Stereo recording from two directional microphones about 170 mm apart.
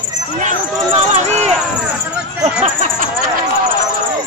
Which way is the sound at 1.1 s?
40° right (ahead or behind).